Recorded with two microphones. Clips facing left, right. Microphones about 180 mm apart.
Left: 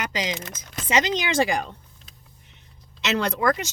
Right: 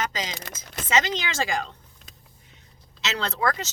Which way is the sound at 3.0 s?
15° left (ahead or behind).